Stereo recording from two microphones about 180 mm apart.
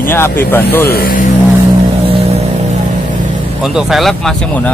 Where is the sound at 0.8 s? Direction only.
55° left (ahead or behind).